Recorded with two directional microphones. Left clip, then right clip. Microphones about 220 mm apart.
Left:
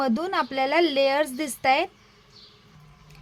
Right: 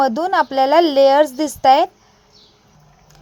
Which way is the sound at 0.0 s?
15° right (ahead or behind).